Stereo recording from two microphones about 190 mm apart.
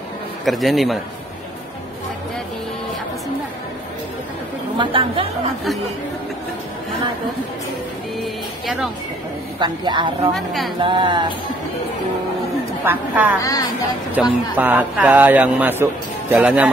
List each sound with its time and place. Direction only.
0.5 s a man's voice: centre (ahead or behind)
4.7 s speech: 30° right (ahead or behind)
8.2 s music: centre (ahead or behind)
9.6 s speech: 25° right (ahead or behind)
10.3 s a man's voice: centre (ahead or behind)
10.8 s speech: 25° right (ahead or behind)
12.8 s a man's voice: 10° right (ahead or behind)
13.4 s a woman's voice: 15° left (ahead or behind)
14.2 s a man's voice: 5° right (ahead or behind)